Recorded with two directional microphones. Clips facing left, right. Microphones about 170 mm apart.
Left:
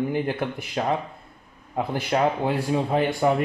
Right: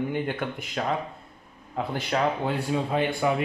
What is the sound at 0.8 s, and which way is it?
Speech, 25° left (ahead or behind).